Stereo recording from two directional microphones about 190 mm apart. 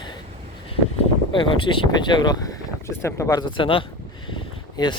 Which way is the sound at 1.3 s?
25° left (ahead or behind).